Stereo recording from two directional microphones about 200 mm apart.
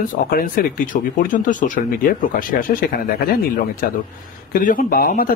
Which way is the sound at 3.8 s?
45° left (ahead or behind).